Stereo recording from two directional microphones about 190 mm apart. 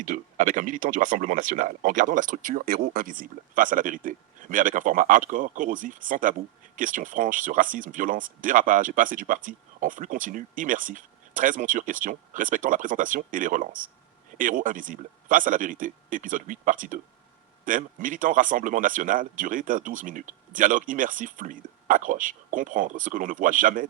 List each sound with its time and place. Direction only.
0.0 s speech: 45° right (ahead or behind)